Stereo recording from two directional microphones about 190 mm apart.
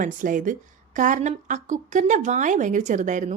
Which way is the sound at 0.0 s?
45° right (ahead or behind).